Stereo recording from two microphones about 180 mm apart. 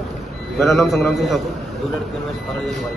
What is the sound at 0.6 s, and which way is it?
Speech, centre (ahead or behind).